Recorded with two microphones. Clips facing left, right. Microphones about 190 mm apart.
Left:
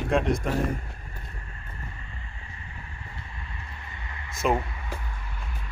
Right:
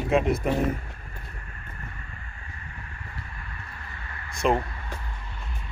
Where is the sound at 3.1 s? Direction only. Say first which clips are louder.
Right 1 dB; 20° left (ahead or behind).